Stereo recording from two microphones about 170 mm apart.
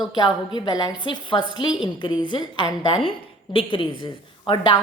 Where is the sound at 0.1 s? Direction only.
25° left (ahead or behind).